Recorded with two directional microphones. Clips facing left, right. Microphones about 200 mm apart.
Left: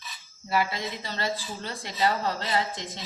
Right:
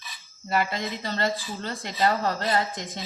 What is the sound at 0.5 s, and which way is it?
A woman's voice, 50° right (ahead or behind).